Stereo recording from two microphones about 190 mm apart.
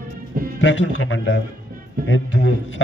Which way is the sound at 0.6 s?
80° left.